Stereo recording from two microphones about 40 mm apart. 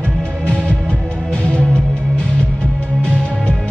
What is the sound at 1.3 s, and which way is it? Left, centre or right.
Music, left.